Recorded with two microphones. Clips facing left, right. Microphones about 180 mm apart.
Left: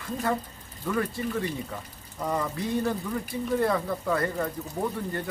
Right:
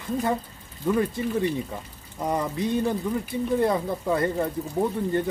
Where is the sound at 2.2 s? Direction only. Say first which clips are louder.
Right 3 dB; 20° right (ahead or behind).